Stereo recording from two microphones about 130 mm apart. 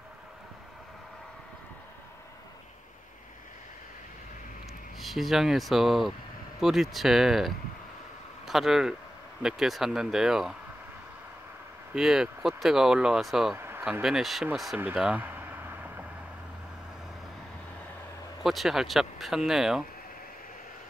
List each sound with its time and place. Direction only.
4.9 s speech: centre (ahead or behind)
11.9 s speech: 5° right (ahead or behind)
13.6 s a sound: 20° right (ahead or behind)
14.0 s speech: centre (ahead or behind)
14.8 s vehicle: 10° right (ahead or behind)
18.4 s speech: centre (ahead or behind)